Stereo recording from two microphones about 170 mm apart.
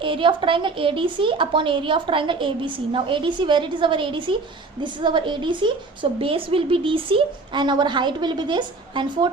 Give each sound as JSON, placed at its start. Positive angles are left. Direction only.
{"t": 0.0, "sound": "a woman's voice", "side_deg": -30}